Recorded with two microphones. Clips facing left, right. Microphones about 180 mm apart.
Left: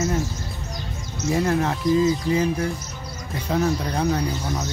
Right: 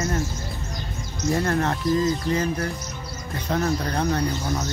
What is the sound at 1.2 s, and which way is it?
Speech, 5° left (ahead or behind).